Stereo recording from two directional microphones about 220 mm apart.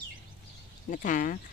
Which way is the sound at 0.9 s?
35° left (ahead or behind).